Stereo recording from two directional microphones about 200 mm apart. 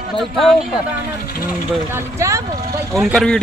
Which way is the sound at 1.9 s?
15° right (ahead or behind).